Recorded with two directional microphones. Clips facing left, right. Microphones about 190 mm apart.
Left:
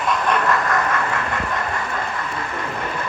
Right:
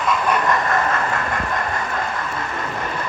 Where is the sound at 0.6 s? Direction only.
25° right (ahead or behind).